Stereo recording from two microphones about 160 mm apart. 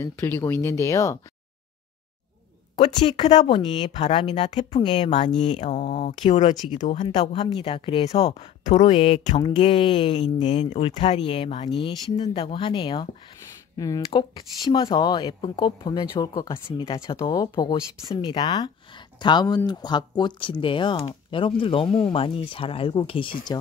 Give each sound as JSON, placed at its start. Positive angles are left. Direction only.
{"t": 0.0, "sound": "speech", "side_deg": 15}
{"t": 3.4, "sound": "speech", "side_deg": 30}
{"t": 3.9, "sound": "speech", "side_deg": 40}
{"t": 5.6, "sound": "speech", "side_deg": 45}
{"t": 7.2, "sound": "speech", "side_deg": 35}